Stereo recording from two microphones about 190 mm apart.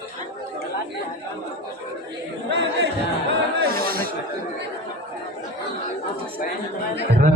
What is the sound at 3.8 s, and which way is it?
Chatter, 50° right (ahead or behind).